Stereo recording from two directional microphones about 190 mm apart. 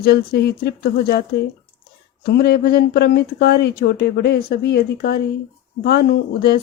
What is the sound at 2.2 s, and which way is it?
Speech, 55° left (ahead or behind).